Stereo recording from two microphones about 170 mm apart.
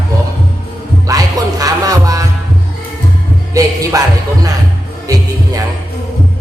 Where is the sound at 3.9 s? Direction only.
20° right (ahead or behind).